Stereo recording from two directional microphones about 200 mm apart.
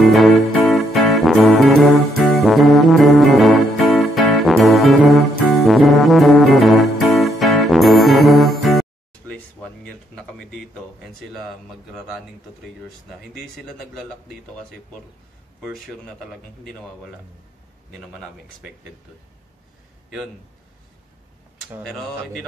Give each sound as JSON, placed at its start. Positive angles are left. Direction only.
{"t": 0.0, "sound": "music", "side_deg": 0}
{"t": 9.3, "sound": "a sound", "side_deg": 5}
{"t": 11.1, "sound": "speech", "side_deg": 0}